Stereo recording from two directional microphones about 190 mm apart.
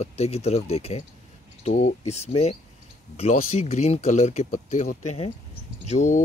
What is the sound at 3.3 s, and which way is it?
Speech, 45° left (ahead or behind).